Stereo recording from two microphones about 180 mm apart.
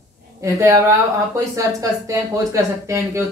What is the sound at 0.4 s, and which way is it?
Speech, 15° right (ahead or behind).